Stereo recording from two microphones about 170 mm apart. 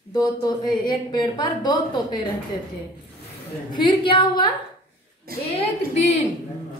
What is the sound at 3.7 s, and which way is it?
Speech, 25° left (ahead or behind).